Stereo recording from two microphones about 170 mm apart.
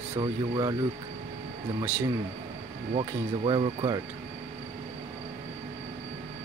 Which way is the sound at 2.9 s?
30° right (ahead or behind).